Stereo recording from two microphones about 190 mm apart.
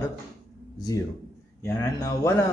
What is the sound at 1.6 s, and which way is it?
Speech, 15° left (ahead or behind).